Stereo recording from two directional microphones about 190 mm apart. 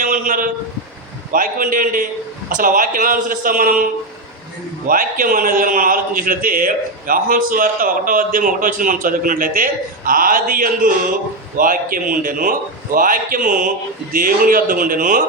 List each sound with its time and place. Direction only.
0.0 s a sound: 45° right (ahead or behind)
1.3 s a man's voice: 45° right (ahead or behind)
4.9 s a man's voice: 45° right (ahead or behind)